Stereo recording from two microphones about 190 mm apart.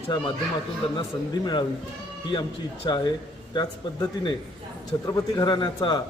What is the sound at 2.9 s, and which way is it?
A man's voice, 25° left (ahead or behind).